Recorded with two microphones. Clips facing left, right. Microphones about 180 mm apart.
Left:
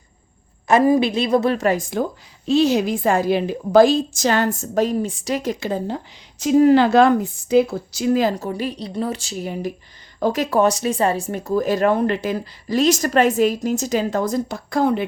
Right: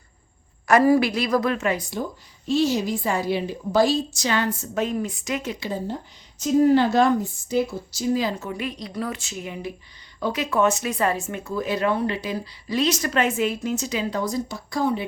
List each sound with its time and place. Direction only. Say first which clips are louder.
0.7 s a woman's voice: left 2 dB; 20° left (ahead or behind); by 2.0 s 45° left (ahead or behind)
2.5 s speech: left 5 dB; 65° left (ahead or behind); by 5.7 s 45° left (ahead or behind)
6.4 s speech: left 4 dB; 90° left; by 14.9 s 55° left (ahead or behind)